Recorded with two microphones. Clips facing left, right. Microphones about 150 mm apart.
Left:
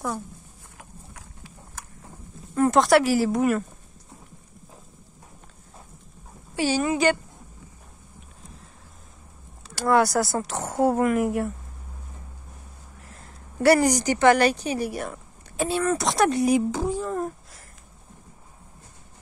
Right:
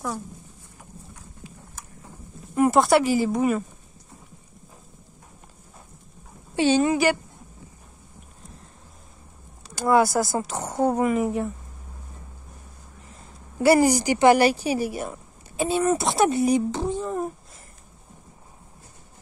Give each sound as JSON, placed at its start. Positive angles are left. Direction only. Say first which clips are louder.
{"t": 0.7, "sound": "a sound", "louder": "even", "side_deg": 90}
{"t": 2.5, "sound": "a sound", "louder": "right 1 dB", "side_deg": -15}
{"t": 2.8, "sound": "speech", "louder": "left 3 dB", "side_deg": 0}
{"t": 6.5, "sound": "a woman's voice", "louder": "right 4 dB", "side_deg": -25}
{"t": 9.8, "sound": "speech", "louder": "right 1 dB", "side_deg": 0}
{"t": 13.1, "sound": "a woman's voice", "louder": "right 1 dB", "side_deg": 0}